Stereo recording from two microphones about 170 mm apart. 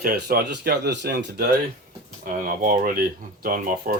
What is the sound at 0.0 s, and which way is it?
Speech, 60° right (ahead or behind).